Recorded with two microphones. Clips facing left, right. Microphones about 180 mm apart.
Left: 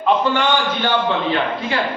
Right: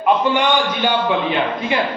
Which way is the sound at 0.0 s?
15° right (ahead or behind).